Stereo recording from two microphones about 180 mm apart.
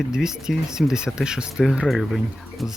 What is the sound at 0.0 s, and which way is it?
Speech, 5° right (ahead or behind).